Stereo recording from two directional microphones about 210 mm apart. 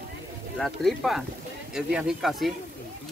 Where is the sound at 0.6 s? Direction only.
Centre (ahead or behind).